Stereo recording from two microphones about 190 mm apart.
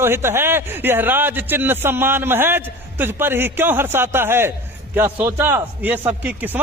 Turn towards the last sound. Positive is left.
turn(degrees=-10)  # may be behind; listen again after turning